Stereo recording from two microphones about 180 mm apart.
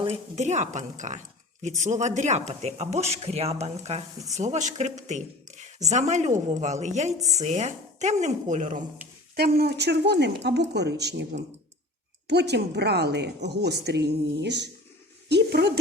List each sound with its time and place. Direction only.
0.0 s speech: 40° right (ahead or behind)
9.3 s a woman's voice: 60° right (ahead or behind)